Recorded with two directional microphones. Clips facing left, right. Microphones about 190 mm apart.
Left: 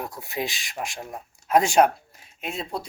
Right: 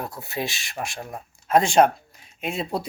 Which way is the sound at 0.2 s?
15° left (ahead or behind).